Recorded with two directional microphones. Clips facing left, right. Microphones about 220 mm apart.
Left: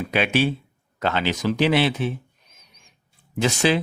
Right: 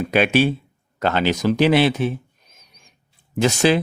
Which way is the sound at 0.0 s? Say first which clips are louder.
Right 4 dB; 45° right (ahead or behind).